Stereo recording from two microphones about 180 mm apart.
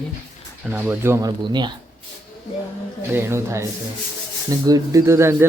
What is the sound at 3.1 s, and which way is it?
Speech, 15° right (ahead or behind).